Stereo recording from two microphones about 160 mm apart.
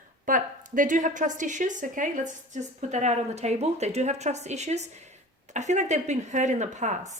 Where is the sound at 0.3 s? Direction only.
55° right (ahead or behind).